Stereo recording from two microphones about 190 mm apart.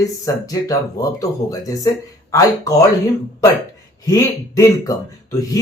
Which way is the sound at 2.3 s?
15° left (ahead or behind).